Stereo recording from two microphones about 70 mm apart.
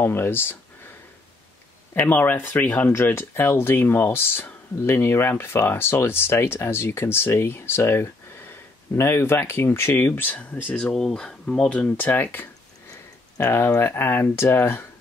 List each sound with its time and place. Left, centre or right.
0.0 s speech: left
2.0 s speech: left
10.7 s speech: centre
12.0 s speech: left
13.4 s speech: left